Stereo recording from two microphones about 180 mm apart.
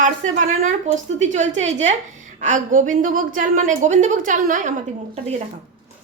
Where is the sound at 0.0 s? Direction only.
45° right (ahead or behind).